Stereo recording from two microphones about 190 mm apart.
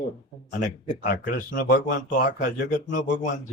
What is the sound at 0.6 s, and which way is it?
Speech, 45° left (ahead or behind).